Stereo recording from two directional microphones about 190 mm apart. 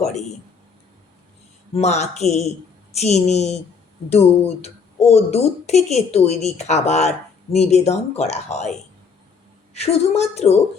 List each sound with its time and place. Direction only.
1.7 s speech: 35° left (ahead or behind)
9.7 s speech: 35° left (ahead or behind)